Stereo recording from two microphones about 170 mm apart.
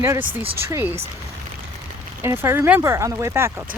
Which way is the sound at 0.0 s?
15° right (ahead or behind).